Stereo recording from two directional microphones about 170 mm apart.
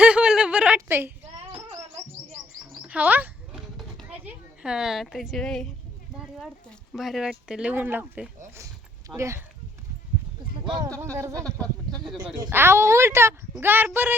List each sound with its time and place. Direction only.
0.0 s a sound: 5° right (ahead or behind)
2.3 s bird: 5° right (ahead or behind)
6.1 s speech: centre (ahead or behind)
8.5 s a sound: 20° right (ahead or behind)
10.8 s speech: 20° right (ahead or behind)
11.6 s speech: 5° left (ahead or behind)
12.1 s speech: 5° right (ahead or behind)